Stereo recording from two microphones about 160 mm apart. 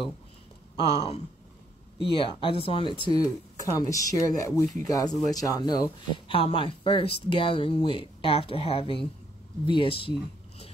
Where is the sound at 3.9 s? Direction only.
20° left (ahead or behind).